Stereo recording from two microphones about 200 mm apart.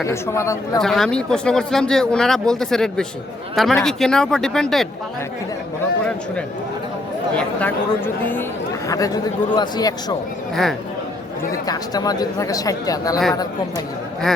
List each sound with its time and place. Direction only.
0.0 s speech: 15° left (ahead or behind)
0.8 s speech: centre (ahead or behind)
7.3 s a man's voice: 10° left (ahead or behind)
10.5 s speech: centre (ahead or behind)
11.6 s a man's voice: 20° left (ahead or behind)